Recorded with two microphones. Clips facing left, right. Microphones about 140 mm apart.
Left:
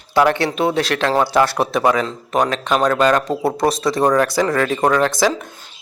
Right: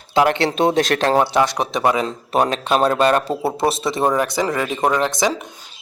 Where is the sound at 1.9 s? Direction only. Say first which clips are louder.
Left 1 dB; 20° right (ahead or behind).